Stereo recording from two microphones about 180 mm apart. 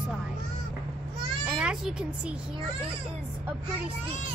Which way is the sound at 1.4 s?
5° right (ahead or behind).